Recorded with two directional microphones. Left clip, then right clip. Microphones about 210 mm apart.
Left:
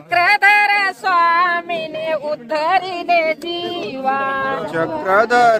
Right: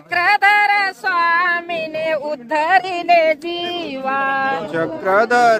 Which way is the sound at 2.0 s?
30° right (ahead or behind).